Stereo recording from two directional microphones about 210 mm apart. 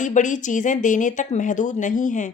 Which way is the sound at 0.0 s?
35° left (ahead or behind).